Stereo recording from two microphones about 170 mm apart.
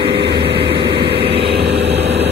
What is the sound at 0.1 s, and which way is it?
Vehicle, 75° right (ahead or behind).